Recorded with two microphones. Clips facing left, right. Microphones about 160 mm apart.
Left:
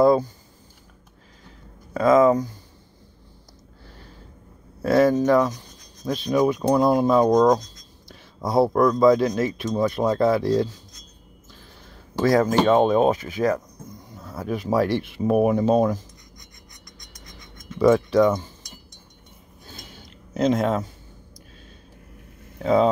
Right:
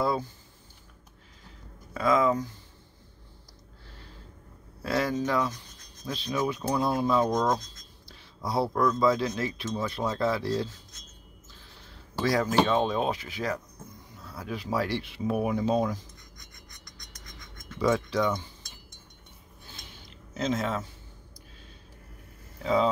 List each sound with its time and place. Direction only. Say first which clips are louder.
0.0 s a sound: left 11 dB; 45° left (ahead or behind)
2.0 s speech: left 8 dB; 45° left (ahead or behind)
4.8 s speech: left 10 dB; 50° left (ahead or behind)
12.2 s speech: left 6 dB; 45° left (ahead or behind)
17.7 s speech: left 9 dB; 55° left (ahead or behind)
19.6 s a sound: left 6 dB; 40° left (ahead or behind)
20.3 s speech: left 8 dB; 55° left (ahead or behind)
22.6 s speech: left 6 dB; 50° left (ahead or behind)